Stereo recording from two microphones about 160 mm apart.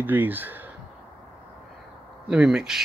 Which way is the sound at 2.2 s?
5° right (ahead or behind).